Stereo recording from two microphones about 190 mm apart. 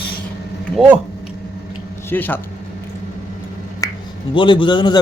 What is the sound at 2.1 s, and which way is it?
Speech, 10° left (ahead or behind).